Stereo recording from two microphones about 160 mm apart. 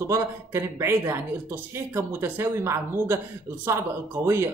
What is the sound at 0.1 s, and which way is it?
A man's voice, 20° right (ahead or behind).